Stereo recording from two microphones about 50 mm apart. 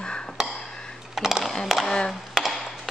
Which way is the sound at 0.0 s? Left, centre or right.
Centre.